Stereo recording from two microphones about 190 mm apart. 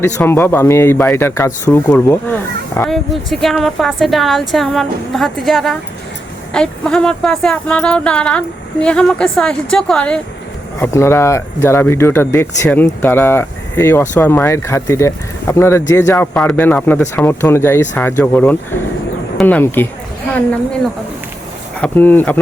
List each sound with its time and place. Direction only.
0.0 s speech: 10° left (ahead or behind)
21.8 s speech: 10° left (ahead or behind)